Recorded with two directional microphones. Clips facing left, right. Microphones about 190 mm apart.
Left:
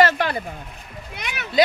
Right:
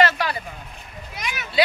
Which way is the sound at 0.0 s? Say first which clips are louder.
Left 2 dB; 55° left (ahead or behind).